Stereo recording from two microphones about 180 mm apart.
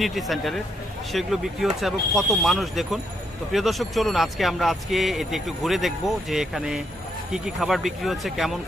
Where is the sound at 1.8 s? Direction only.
Centre (ahead or behind).